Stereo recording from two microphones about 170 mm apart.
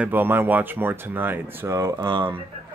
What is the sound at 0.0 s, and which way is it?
Speech, 10° right (ahead or behind).